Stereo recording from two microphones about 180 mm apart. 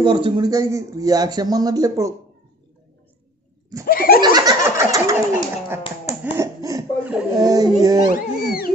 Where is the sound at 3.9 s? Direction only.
55° left (ahead or behind).